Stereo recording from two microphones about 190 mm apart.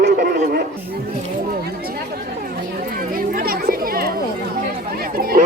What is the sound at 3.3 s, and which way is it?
Chatter, 50° right (ahead or behind).